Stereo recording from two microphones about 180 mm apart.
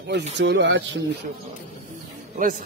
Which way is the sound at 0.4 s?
80° right.